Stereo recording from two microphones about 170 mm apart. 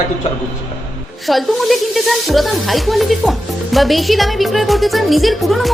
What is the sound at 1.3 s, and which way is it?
Speech, centre (ahead or behind).